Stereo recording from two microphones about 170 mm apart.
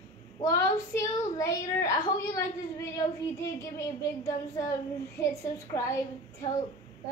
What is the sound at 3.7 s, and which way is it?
A woman's voice, 20° left (ahead or behind).